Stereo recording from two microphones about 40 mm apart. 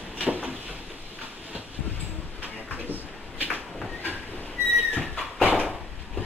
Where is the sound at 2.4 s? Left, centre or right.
Right.